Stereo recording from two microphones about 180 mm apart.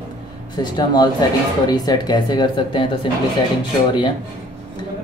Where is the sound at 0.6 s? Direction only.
25° left (ahead or behind).